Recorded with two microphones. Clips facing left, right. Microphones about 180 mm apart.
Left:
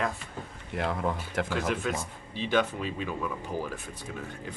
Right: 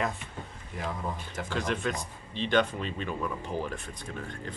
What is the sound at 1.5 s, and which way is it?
Speech, 5° left (ahead or behind).